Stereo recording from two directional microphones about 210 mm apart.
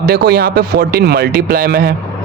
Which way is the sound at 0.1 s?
50° right (ahead or behind).